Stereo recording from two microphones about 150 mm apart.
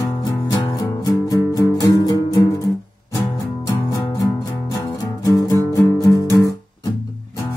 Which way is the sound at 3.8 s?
25° left (ahead or behind).